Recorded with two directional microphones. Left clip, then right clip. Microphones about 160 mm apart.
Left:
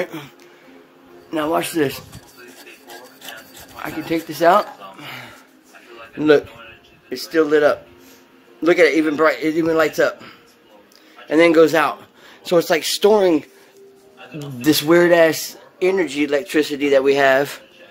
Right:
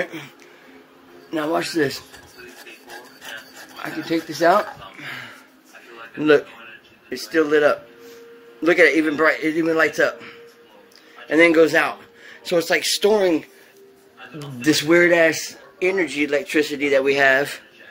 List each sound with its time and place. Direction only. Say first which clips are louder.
0.0 s speech: left 1 dB; 35° left (ahead or behind)
1.3 s a man's voice: left 2 dB; 10° left (ahead or behind)
3.8 s a man's voice: left 1 dB; 15° left (ahead or behind); by 13.4 s 35° left (ahead or behind)
14.6 s speech: left 1 dB; 20° left (ahead or behind)